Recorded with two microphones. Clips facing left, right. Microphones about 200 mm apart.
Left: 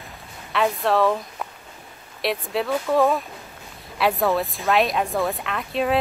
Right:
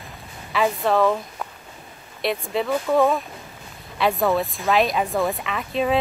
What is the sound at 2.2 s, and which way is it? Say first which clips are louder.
Speech: right 1 dB; centre (ahead or behind).